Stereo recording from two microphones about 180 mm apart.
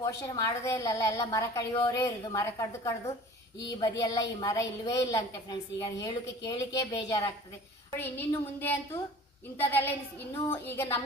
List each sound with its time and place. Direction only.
0.0 s a woman's voice: 20° left (ahead or behind)